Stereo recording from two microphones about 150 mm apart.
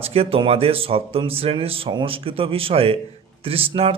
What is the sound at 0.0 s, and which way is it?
Speech, 40° right (ahead or behind).